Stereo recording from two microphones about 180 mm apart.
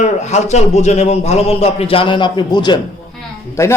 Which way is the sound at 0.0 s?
40° left (ahead or behind).